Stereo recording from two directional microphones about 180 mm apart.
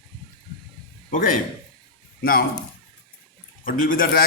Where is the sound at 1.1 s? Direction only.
50° left (ahead or behind).